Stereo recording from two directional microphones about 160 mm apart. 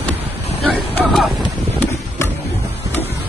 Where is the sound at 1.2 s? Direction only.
Centre (ahead or behind).